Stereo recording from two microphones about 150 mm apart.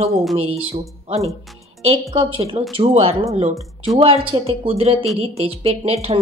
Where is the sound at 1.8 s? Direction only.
40° right (ahead or behind).